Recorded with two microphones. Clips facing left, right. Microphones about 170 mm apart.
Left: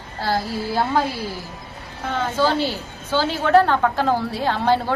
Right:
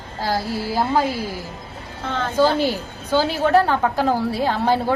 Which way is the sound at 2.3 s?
10° right (ahead or behind).